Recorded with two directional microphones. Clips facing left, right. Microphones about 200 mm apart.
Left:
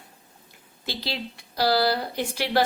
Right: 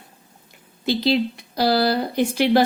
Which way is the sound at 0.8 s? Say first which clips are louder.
Right 13 dB; 20° right (ahead or behind).